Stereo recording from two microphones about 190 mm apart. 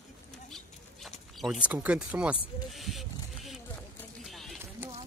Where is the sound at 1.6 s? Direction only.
5° right (ahead or behind).